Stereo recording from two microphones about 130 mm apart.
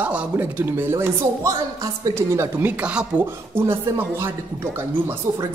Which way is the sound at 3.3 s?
20° right (ahead or behind).